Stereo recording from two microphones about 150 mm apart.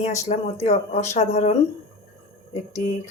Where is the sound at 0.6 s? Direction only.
45° left (ahead or behind).